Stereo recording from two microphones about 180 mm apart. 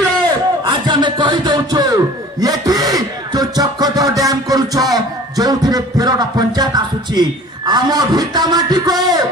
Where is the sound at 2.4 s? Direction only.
20° right (ahead or behind).